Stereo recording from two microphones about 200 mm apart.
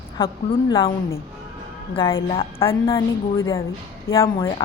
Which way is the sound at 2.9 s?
15° left (ahead or behind).